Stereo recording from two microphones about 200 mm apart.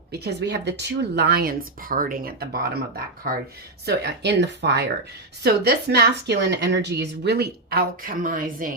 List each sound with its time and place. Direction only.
0.1 s speech: 55° right (ahead or behind)